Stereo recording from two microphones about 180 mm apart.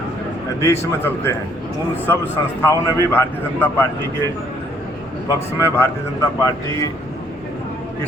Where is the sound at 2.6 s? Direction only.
15° left (ahead or behind).